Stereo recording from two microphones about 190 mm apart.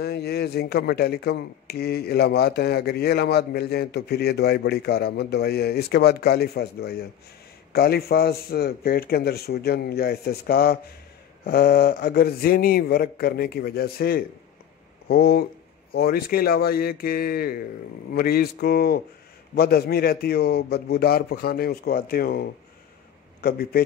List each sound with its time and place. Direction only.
0.0 s speech: 55° left (ahead or behind)